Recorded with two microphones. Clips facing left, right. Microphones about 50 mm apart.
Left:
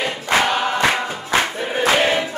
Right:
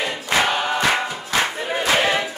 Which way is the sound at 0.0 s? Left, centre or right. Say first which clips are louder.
Left 3 dB; left.